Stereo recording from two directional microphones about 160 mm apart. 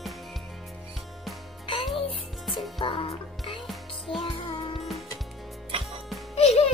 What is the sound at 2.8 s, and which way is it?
Music, 35° left (ahead or behind).